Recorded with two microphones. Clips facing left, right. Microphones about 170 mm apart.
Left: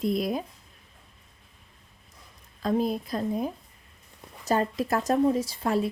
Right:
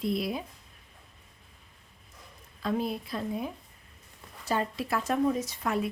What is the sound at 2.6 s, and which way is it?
A woman's voice, 40° left (ahead or behind).